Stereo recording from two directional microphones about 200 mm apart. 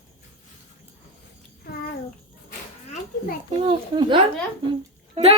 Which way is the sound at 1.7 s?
50° left (ahead or behind).